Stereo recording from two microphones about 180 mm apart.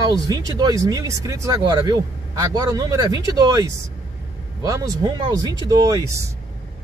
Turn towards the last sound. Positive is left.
turn(degrees=-20)  # may be behind; listen again after turning